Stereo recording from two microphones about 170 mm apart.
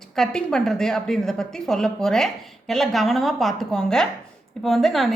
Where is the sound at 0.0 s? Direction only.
Centre (ahead or behind).